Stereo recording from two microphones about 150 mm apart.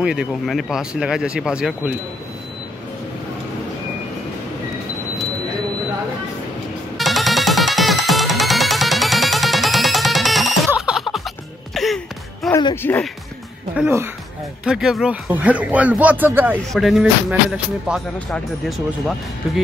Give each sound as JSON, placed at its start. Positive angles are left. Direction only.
{"t": 0.0, "sound": "speech", "side_deg": -5}
{"t": 7.0, "sound": "music", "side_deg": 0}
{"t": 12.4, "sound": "speech", "side_deg": 20}
{"t": 14.6, "sound": "a man's voice", "side_deg": -5}
{"t": 16.7, "sound": "speech", "side_deg": 0}